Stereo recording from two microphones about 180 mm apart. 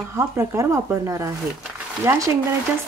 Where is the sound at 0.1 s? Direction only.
15° right (ahead or behind).